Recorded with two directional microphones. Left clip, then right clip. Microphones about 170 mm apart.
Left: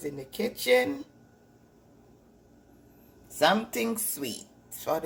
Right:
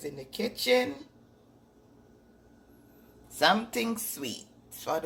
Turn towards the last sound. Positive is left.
turn(degrees=15)  # may be behind; listen again after turning